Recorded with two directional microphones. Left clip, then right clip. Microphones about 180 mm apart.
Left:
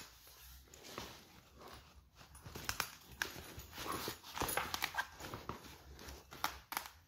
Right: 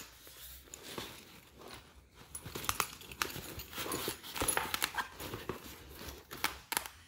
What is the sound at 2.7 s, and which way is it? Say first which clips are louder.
Crumpling: right 5 dB; 15° right (ahead or behind).